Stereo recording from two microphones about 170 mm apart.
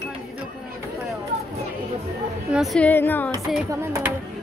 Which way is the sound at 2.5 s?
Centre (ahead or behind).